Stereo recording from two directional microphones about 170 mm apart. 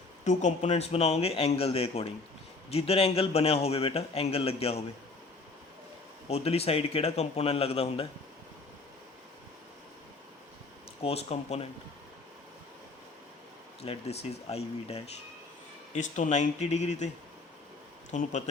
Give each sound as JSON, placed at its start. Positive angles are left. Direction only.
{"t": 0.3, "sound": "a man's voice", "side_deg": 45}
{"t": 6.2, "sound": "a man's voice", "side_deg": 35}
{"t": 11.0, "sound": "a man's voice", "side_deg": 35}
{"t": 13.8, "sound": "a man's voice", "side_deg": 35}
{"t": 18.1, "sound": "speech", "side_deg": 45}